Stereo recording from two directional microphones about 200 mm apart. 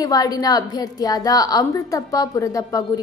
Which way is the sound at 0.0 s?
20° left (ahead or behind).